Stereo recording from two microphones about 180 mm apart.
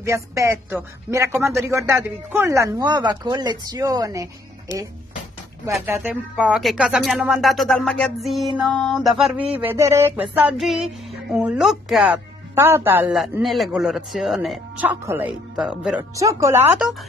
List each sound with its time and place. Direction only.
0.0 s speech: 15° right (ahead or behind)
5.9 s speech: 10° right (ahead or behind)
16.0 s speech: 20° right (ahead or behind)